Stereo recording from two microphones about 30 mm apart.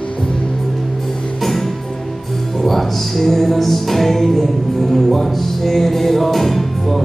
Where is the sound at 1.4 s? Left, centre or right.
Centre.